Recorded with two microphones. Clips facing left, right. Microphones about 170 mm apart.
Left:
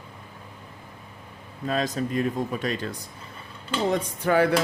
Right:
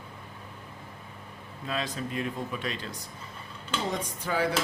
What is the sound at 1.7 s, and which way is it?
Speech, 45° left (ahead or behind).